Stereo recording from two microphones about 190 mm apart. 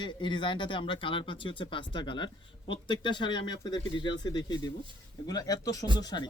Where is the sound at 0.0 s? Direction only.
25° left (ahead or behind).